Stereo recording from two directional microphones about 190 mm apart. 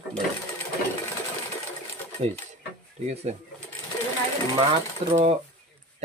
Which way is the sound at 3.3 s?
35° right (ahead or behind).